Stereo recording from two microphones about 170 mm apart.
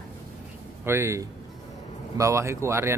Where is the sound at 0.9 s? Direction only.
15° right (ahead or behind).